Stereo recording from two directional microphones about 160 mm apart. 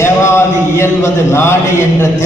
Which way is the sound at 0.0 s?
15° left (ahead or behind).